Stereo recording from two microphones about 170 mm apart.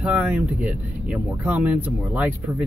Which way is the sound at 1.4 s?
10° right (ahead or behind).